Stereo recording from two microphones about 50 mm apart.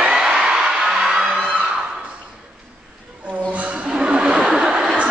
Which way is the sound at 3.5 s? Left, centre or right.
Right.